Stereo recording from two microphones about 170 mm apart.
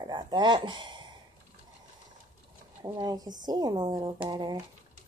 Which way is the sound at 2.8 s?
20° right (ahead or behind).